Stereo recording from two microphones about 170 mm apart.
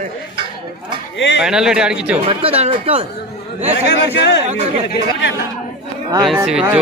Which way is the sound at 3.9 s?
90° left.